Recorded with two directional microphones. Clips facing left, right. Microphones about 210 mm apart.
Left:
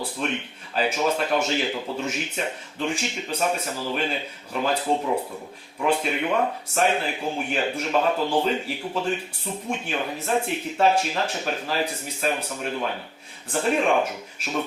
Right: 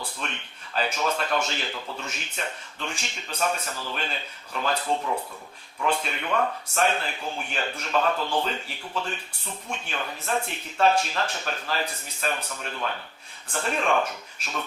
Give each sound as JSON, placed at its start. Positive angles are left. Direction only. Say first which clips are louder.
{"t": 0.2, "sound": "speech", "louder": "left 9 dB", "side_deg": 10}
{"t": 5.0, "sound": "speech", "louder": "left 4 dB", "side_deg": 20}
{"t": 5.8, "sound": "speech", "louder": "left 4 dB", "side_deg": 10}